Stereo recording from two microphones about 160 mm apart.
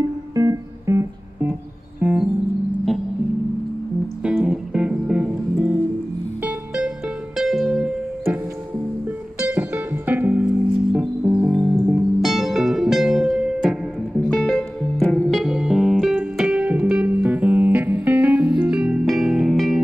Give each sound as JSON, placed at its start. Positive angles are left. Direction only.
{"t": 0.3, "sound": "music", "side_deg": -20}
{"t": 4.2, "sound": "music", "side_deg": -5}
{"t": 9.4, "sound": "music", "side_deg": -10}